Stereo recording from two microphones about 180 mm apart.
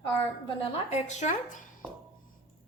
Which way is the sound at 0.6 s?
35° left (ahead or behind).